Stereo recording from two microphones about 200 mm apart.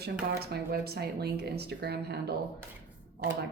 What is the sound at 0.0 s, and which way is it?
Speech, 50° right (ahead or behind).